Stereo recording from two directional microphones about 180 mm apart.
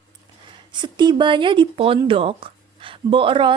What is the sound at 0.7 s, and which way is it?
Speech, 25° right (ahead or behind).